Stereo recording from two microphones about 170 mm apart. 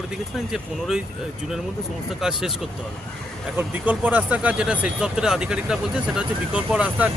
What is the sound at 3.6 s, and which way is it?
Speech, 10° right (ahead or behind).